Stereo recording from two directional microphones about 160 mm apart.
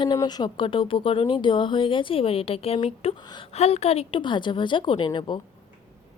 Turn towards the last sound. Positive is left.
turn(degrees=30)  # may be behind; listen again after turning